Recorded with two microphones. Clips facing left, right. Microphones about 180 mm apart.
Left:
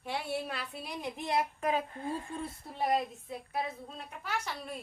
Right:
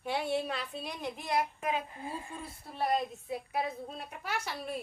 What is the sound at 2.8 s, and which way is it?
Speech, 10° left (ahead or behind).